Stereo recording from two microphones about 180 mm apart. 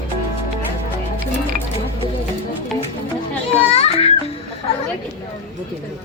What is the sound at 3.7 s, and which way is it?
Music, 35° left (ahead or behind).